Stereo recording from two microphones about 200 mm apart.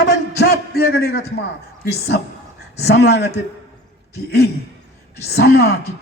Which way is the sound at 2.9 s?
55° left (ahead or behind).